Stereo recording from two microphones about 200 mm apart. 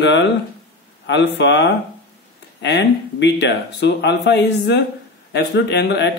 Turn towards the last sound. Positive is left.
turn(degrees=60)  # may be behind; listen again after turning